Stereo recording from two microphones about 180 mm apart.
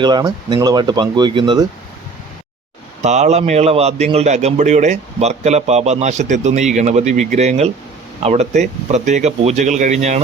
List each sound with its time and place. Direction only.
0.0 s speech: 25° right (ahead or behind)
3.0 s a man's voice: 40° right (ahead or behind)